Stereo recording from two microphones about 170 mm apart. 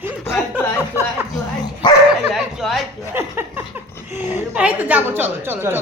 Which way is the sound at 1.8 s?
25° left (ahead or behind).